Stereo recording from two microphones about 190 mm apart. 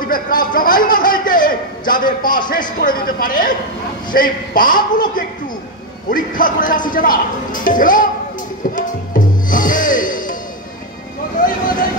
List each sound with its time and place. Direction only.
0.1 s a man's voice: 45° left (ahead or behind)
2.2 s speech: 25° left (ahead or behind)
2.8 s a man's voice: 50° left (ahead or behind)
8.7 s music: 45° left (ahead or behind)